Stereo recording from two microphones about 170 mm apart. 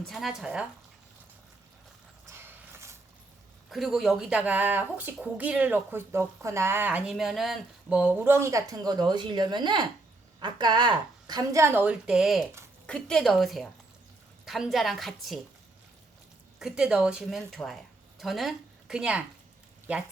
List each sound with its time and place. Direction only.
0.0 s speech: centre (ahead or behind)
2.2 s mechanisms: 15° right (ahead or behind)
3.7 s speech: centre (ahead or behind)
16.6 s speech: 5° right (ahead or behind)